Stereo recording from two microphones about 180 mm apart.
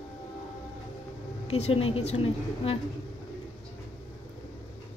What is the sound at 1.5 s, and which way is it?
A woman's voice, 35° left (ahead or behind).